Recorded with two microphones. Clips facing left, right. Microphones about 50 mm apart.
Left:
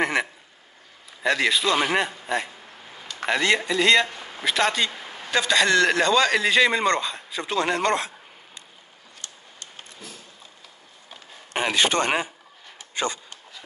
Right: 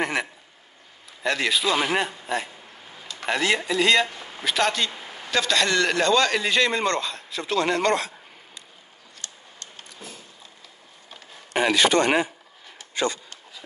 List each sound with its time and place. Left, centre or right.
0.0 s a man's voice: centre; by 8.1 s left
11.7 s speech: left
12.7 s a sound: left